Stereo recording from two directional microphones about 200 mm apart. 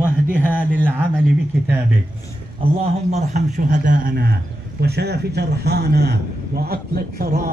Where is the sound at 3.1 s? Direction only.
35° right (ahead or behind).